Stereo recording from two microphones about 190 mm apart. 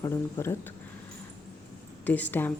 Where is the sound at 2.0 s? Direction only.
10° left (ahead or behind).